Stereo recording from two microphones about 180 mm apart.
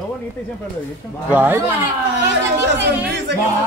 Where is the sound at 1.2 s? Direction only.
10° right (ahead or behind).